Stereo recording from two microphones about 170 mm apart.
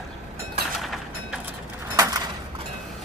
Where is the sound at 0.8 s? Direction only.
Centre (ahead or behind).